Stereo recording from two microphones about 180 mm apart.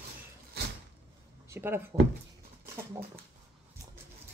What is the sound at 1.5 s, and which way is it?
Speech, 10° right (ahead or behind).